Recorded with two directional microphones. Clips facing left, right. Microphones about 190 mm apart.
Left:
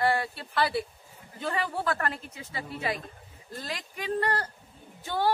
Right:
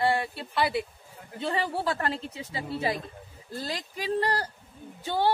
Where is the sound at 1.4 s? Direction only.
30° right (ahead or behind).